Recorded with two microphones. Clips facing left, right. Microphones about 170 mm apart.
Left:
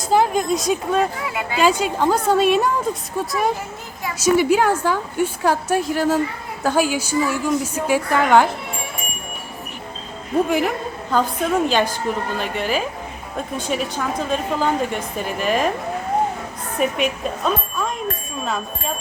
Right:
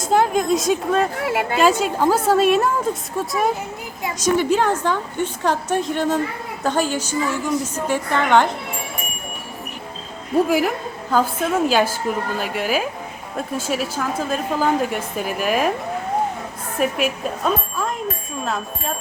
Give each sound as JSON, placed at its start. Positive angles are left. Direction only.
{"t": 0.0, "sound": "a woman's voice", "side_deg": 0}
{"t": 1.1, "sound": "speech", "side_deg": -65}
{"t": 1.5, "sound": "a woman's voice", "side_deg": 0}
{"t": 10.3, "sound": "a woman's voice", "side_deg": -5}
{"t": 16.7, "sound": "a woman's voice", "side_deg": -5}